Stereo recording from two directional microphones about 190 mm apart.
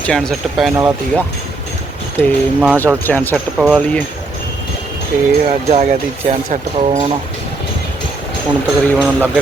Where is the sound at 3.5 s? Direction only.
5° right (ahead or behind).